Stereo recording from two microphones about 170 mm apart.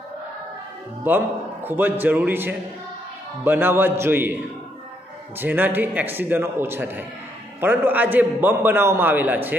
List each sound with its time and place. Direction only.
1.0 s a man's voice: 10° right (ahead or behind)
5.4 s a man's voice: 10° right (ahead or behind)